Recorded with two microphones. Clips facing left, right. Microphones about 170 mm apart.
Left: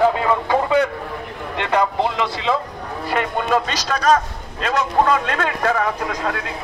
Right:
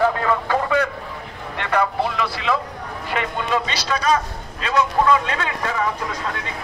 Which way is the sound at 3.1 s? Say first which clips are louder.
Left 3 dB; 45° left (ahead or behind).